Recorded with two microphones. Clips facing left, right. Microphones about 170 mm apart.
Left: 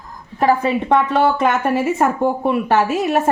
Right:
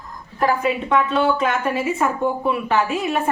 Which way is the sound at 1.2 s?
45° left (ahead or behind).